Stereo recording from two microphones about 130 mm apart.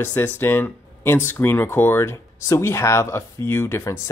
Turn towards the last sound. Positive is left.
turn(degrees=20)  # may be behind; listen again after turning